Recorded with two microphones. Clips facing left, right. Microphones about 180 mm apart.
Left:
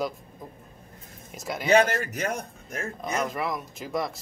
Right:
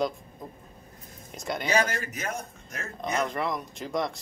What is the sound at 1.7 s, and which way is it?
Speech, 65° left (ahead or behind).